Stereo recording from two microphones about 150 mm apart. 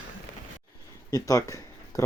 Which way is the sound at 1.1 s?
20° left (ahead or behind).